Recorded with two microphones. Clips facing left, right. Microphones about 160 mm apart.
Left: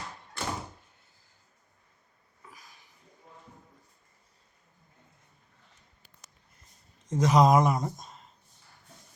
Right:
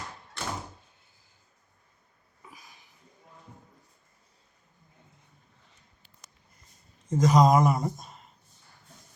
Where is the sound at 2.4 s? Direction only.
20° right (ahead or behind).